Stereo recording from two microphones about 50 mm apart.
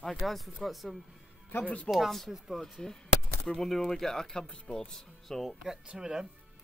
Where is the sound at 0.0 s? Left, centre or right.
Centre; by 4.8 s left.